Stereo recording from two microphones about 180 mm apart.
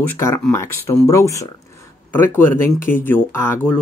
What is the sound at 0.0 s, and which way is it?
Speech, 15° left (ahead or behind).